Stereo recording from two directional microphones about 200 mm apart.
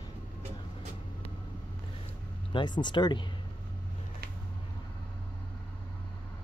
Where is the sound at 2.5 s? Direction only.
20° left (ahead or behind).